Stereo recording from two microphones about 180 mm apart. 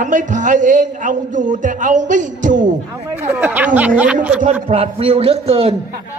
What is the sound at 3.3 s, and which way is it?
Speech, 10° right (ahead or behind).